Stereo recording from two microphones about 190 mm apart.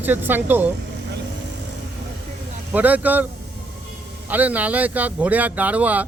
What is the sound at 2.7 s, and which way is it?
Speech, 10° right (ahead or behind).